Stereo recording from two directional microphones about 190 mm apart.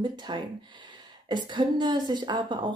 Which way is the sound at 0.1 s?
25° right (ahead or behind).